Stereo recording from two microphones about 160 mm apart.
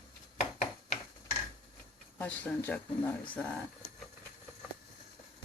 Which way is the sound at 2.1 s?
10° left (ahead or behind).